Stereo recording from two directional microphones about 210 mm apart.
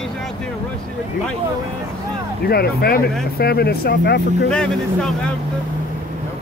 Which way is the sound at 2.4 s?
50° left (ahead or behind).